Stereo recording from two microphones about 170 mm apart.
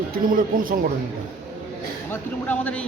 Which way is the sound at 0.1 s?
55° right (ahead or behind).